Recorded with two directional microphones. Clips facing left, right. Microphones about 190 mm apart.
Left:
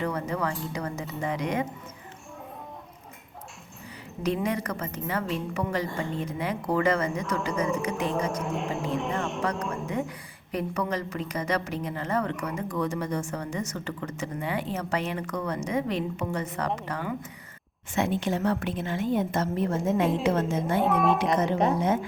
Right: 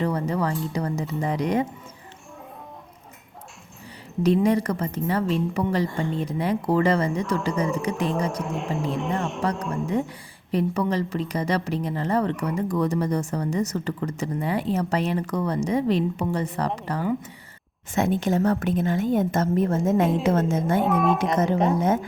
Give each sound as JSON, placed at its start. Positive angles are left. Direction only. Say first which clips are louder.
{"t": 0.0, "sound": "speech", "louder": "right 4 dB", "side_deg": -35}
{"t": 4.2, "sound": "a woman's voice", "louder": "right 8 dB", "side_deg": -35}
{"t": 8.4, "sound": "speech", "louder": "right 2 dB", "side_deg": 0}
{"t": 9.4, "sound": "a woman's voice", "louder": "right 3 dB", "side_deg": -35}
{"t": 20.8, "sound": "speech", "louder": "left 1 dB", "side_deg": 0}